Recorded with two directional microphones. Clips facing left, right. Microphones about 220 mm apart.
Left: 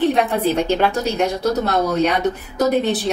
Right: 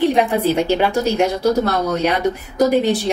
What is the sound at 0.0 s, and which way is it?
Speech, 10° right (ahead or behind).